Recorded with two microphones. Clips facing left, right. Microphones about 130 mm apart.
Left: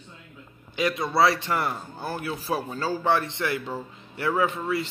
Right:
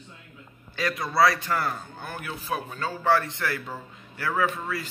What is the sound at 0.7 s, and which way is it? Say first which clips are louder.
A man's voice: left 1 dB; 25° left (ahead or behind).